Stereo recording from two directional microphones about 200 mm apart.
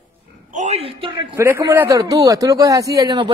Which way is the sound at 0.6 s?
35° right (ahead or behind).